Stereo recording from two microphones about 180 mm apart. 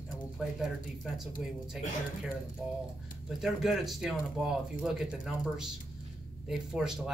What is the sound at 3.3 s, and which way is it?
Speech, 5° right (ahead or behind).